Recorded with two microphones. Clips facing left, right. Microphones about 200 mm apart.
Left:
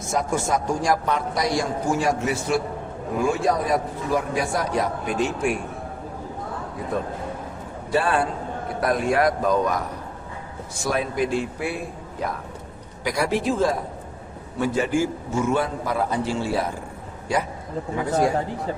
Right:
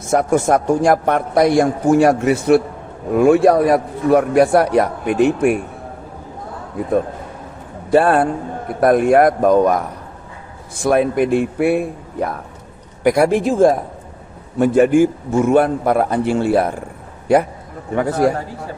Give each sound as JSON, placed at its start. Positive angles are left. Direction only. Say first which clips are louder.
{"t": 0.1, "sound": "a man's voice", "louder": "right 9 dB", "side_deg": -60}
{"t": 7.9, "sound": "a man's voice", "louder": "right 9 dB", "side_deg": -55}
{"t": 13.1, "sound": "a man's voice", "louder": "right 9 dB", "side_deg": -55}